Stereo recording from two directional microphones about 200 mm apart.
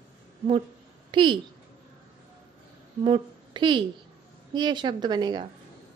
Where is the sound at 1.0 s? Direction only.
25° right (ahead or behind).